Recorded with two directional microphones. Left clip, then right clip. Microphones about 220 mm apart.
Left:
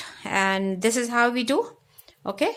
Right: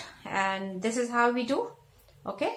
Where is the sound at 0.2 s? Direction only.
50° left (ahead or behind).